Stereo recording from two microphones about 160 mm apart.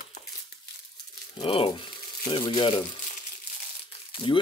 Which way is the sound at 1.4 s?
35° left (ahead or behind).